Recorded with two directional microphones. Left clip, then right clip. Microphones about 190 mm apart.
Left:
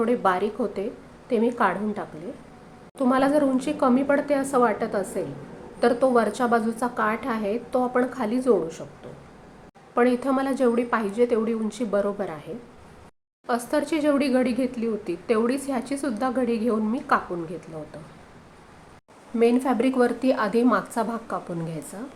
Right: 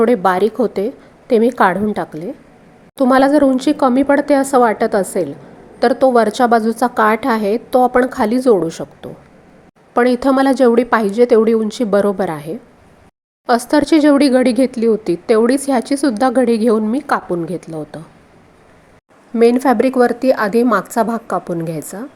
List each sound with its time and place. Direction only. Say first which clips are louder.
0.0 s speech: right 10 dB; 40° right (ahead or behind)
9.9 s speech: right 9 dB; 45° right (ahead or behind)
13.5 s speech: right 12 dB; 40° right (ahead or behind)
19.4 s speech: right 10 dB; 40° right (ahead or behind)